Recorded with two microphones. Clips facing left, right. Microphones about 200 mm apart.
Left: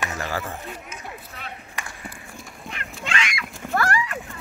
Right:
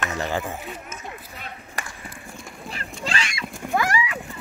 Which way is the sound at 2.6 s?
35° right (ahead or behind).